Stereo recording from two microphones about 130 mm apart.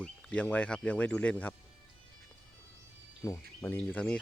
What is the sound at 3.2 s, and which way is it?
Speech, 20° left (ahead or behind).